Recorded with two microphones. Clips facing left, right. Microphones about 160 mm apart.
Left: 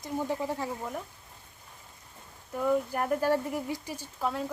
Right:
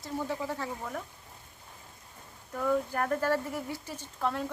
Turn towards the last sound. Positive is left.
turn(degrees=5)  # may be behind; listen again after turning